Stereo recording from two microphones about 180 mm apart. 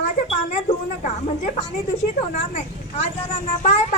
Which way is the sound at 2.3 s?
40° left (ahead or behind).